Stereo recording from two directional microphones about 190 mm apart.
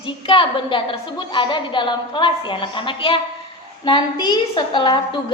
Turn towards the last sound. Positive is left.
turn(degrees=25)  # may be behind; listen again after turning